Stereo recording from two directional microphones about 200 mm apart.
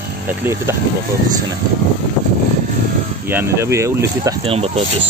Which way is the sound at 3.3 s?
10° right (ahead or behind).